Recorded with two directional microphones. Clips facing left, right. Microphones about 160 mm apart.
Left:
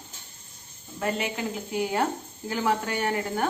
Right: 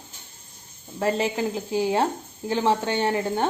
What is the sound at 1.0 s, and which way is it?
Speech, 35° right (ahead or behind).